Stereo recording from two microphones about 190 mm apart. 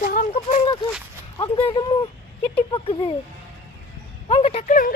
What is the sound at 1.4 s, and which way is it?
Speech, 25° left (ahead or behind).